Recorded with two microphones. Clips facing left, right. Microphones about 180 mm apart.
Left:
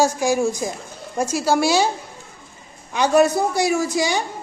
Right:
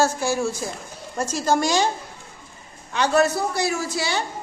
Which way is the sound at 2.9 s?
15° left (ahead or behind).